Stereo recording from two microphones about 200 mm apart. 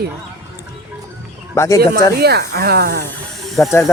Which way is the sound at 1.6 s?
15° left (ahead or behind).